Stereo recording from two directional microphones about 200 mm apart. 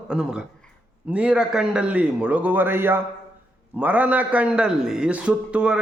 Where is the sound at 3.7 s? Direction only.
10° right (ahead or behind).